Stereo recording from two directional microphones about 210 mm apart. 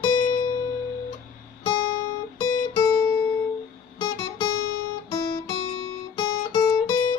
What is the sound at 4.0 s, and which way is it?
Music, 20° left (ahead or behind).